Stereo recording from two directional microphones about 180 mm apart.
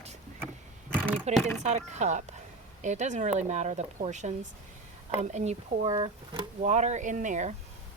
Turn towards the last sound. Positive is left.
turn(degrees=-40)  # may be behind; listen again after turning